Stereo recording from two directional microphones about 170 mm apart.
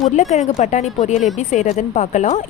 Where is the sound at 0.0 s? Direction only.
45° left (ahead or behind).